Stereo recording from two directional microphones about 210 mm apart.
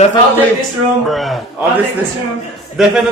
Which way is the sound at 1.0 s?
Centre (ahead or behind).